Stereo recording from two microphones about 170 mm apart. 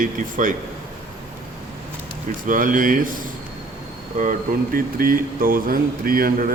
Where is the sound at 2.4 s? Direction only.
50° right (ahead or behind).